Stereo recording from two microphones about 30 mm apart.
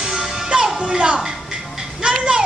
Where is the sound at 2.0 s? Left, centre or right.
Right.